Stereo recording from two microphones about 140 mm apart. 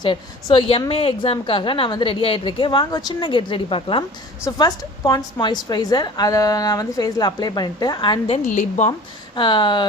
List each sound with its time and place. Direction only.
0.0 s a woman's voice: 35° left (ahead or behind)
4.4 s a woman's voice: 25° left (ahead or behind)